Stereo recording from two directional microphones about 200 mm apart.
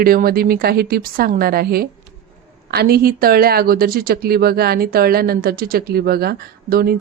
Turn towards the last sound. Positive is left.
turn(degrees=-50)  # may be behind; listen again after turning